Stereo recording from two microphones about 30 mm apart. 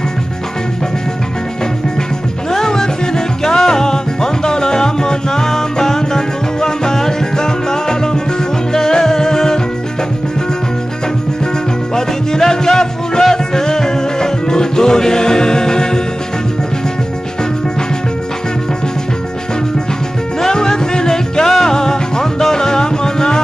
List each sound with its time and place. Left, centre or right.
2.5 s music: centre
11.9 s music: centre
20.4 s music: left